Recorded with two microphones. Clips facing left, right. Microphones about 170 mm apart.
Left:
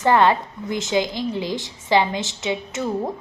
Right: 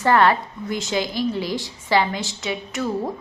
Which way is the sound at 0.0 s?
20° left (ahead or behind).